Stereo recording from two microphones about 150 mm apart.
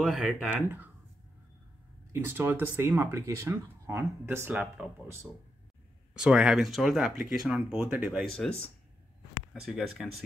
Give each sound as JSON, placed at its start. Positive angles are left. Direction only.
{"t": 0.0, "sound": "speech", "side_deg": 0}
{"t": 0.7, "sound": "speech", "side_deg": -15}
{"t": 2.1, "sound": "speech", "side_deg": -15}
{"t": 8.3, "sound": "speech", "side_deg": 5}